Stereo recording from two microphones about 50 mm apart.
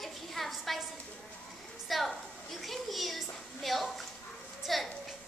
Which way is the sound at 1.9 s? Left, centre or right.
Centre.